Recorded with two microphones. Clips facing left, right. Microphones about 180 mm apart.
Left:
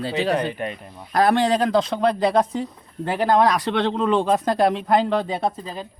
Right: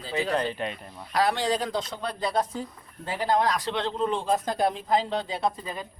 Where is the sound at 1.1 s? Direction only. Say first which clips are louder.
Left 7 dB; 55° left (ahead or behind).